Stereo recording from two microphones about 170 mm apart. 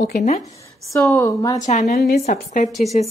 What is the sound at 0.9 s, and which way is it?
Speech, 15° left (ahead or behind).